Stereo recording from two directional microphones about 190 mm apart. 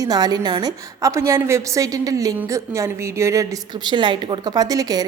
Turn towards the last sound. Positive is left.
turn(degrees=-20)  # may be behind; listen again after turning